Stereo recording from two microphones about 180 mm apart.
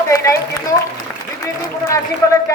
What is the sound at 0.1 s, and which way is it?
Speech, 15° left (ahead or behind).